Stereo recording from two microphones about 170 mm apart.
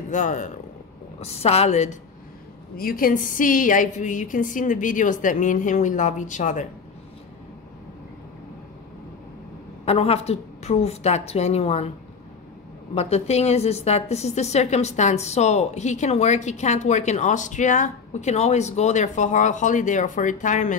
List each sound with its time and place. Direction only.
0.1 s a woman's voice: 45° left (ahead or behind)
2.8 s a woman's voice: 55° left (ahead or behind)
9.8 s a woman's voice: 35° left (ahead or behind)
12.9 s a woman's voice: 40° left (ahead or behind)